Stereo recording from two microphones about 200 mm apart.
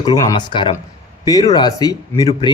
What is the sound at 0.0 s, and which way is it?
A man's voice, 20° left (ahead or behind).